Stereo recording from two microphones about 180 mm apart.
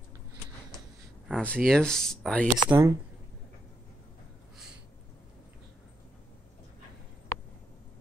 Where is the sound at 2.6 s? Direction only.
15° right (ahead or behind).